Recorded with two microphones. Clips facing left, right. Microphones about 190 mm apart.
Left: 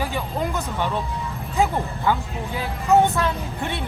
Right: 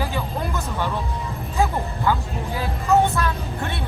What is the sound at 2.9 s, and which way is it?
Vehicle, 20° left (ahead or behind).